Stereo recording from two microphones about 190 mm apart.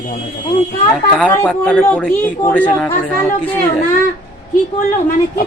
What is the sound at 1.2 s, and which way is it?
Speech, 5° left (ahead or behind).